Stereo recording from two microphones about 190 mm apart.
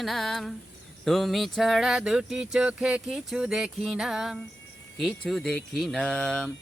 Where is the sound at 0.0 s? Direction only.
Centre (ahead or behind).